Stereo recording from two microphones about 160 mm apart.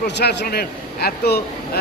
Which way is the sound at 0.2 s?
90° left.